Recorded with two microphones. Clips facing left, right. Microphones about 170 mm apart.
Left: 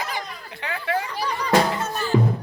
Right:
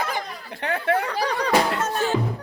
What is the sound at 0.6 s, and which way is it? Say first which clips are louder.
Music: right 4 dB; 55° right (ahead or behind).